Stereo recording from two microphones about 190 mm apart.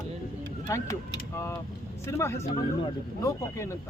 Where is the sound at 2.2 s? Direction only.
15° left (ahead or behind).